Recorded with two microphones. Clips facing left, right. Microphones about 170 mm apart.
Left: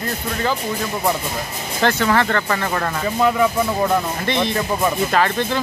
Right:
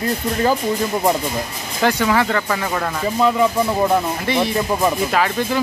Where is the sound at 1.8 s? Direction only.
10° right (ahead or behind).